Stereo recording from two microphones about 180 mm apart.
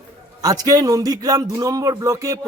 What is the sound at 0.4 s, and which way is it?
Speech, 20° right (ahead or behind).